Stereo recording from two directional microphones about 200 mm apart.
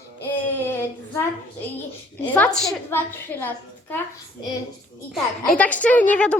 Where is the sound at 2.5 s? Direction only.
5° left (ahead or behind).